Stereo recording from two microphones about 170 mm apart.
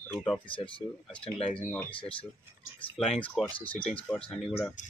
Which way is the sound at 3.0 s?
Centre (ahead or behind).